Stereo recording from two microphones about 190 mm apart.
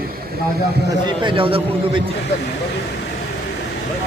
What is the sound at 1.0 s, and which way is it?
Speech, 25° right (ahead or behind).